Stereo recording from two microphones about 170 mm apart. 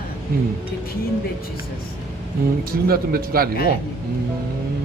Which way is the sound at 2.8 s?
60° right (ahead or behind).